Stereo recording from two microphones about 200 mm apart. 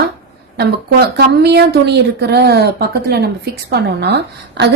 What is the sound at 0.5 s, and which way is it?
A woman's voice, 55° right (ahead or behind).